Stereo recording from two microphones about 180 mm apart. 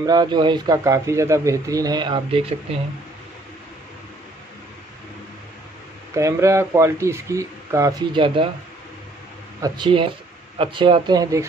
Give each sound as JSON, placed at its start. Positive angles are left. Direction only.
{"t": 0.0, "sound": "speech", "side_deg": -20}
{"t": 6.1, "sound": "speech", "side_deg": -15}
{"t": 9.6, "sound": "speech", "side_deg": -25}